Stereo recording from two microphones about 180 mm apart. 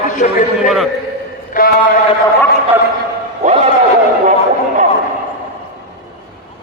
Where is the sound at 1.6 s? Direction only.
50° left (ahead or behind).